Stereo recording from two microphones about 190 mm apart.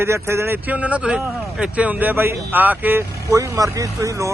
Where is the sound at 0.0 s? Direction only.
15° right (ahead or behind).